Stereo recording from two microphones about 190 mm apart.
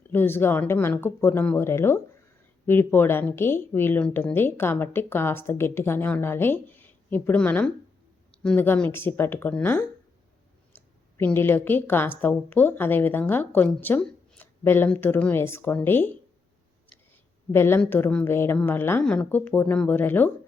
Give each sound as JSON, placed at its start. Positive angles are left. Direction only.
{"t": 0.1, "sound": "a woman's voice", "side_deg": 10}
{"t": 17.5, "sound": "a woman's voice", "side_deg": 15}